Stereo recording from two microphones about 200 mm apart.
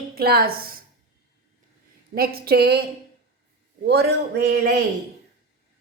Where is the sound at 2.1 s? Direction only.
50° right (ahead or behind).